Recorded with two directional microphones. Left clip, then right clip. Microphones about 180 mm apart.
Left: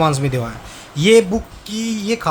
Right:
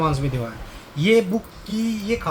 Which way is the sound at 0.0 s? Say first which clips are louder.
Left 6 dB; 65° left (ahead or behind).